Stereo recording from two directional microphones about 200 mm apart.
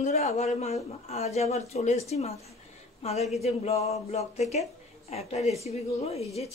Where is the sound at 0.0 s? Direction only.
35° left (ahead or behind).